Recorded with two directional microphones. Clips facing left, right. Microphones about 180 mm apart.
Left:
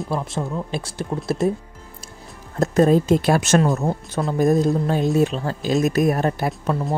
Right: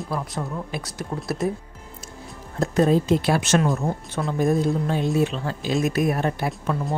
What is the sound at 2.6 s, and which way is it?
Speech, 45° left (ahead or behind).